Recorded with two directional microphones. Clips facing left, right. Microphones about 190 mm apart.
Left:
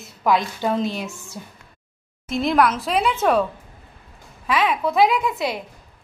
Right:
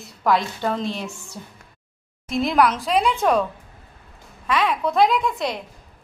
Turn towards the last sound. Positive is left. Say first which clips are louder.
# even
turn(degrees=5)  # may be behind; listen again after turning